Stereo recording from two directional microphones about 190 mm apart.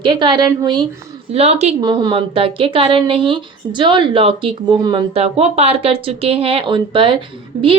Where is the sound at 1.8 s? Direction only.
25° right (ahead or behind).